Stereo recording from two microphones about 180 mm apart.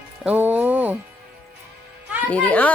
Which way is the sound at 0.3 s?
10° right (ahead or behind).